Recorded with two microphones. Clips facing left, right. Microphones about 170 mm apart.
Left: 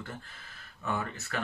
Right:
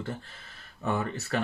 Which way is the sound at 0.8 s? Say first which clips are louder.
Right 4 dB; 30° right (ahead or behind).